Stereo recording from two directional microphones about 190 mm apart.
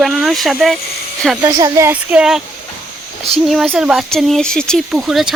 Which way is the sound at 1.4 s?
15° right (ahead or behind).